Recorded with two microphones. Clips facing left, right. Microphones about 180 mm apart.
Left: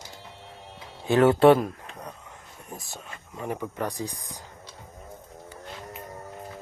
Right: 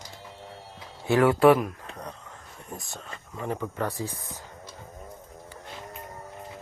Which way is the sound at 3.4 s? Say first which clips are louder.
Even; 15° left (ahead or behind).